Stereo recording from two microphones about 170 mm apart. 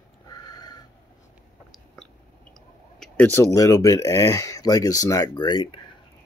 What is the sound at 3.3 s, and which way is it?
Speech, 20° left (ahead or behind).